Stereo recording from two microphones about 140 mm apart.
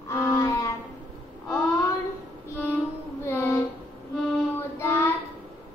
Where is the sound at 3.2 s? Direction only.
15° left (ahead or behind).